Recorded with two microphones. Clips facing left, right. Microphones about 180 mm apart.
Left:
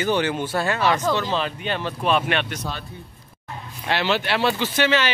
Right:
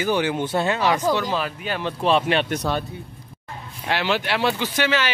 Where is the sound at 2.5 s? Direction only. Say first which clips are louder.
Right 7 dB; 55° right (ahead or behind).